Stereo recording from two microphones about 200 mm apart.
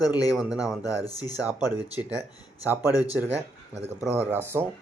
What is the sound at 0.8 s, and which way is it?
Speech, 20° left (ahead or behind).